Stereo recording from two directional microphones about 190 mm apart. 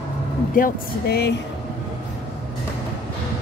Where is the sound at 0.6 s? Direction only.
50° left (ahead or behind).